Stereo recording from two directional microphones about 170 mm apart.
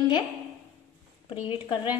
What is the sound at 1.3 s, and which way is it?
Speech, 10° right (ahead or behind).